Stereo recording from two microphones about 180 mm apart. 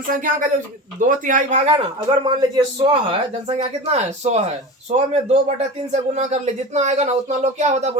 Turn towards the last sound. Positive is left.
turn(degrees=-40)  # may be behind; listen again after turning